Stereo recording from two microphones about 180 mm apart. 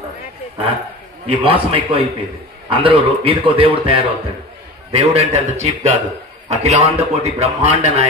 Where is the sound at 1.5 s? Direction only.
30° right (ahead or behind).